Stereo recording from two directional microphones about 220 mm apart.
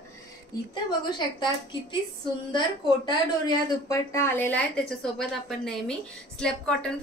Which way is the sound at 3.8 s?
15° left (ahead or behind).